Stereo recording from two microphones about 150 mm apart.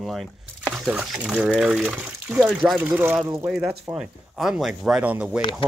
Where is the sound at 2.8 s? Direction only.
10° right (ahead or behind).